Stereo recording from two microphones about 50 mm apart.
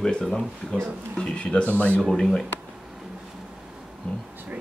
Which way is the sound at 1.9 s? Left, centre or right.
Centre.